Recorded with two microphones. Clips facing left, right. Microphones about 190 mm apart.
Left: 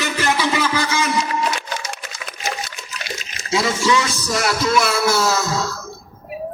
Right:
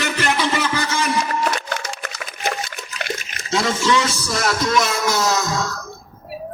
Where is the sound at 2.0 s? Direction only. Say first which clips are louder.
Right 2 dB; 60° right (ahead or behind).